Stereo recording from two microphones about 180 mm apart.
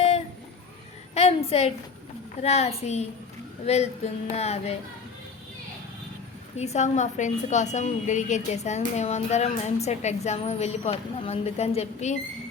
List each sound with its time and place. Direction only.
1.1 s a sound: 35° left (ahead or behind)
2.4 s a woman's voice: 35° left (ahead or behind)
6.6 s a woman's voice: 40° left (ahead or behind)